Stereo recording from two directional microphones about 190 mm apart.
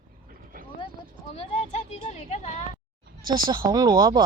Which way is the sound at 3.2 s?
20° right (ahead or behind).